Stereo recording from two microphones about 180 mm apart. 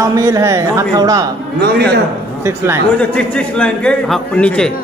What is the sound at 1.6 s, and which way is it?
Speech, 65° right (ahead or behind).